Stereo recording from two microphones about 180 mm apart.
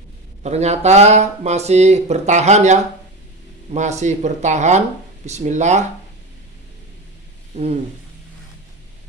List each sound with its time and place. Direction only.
0.4 s speech: 40° right (ahead or behind)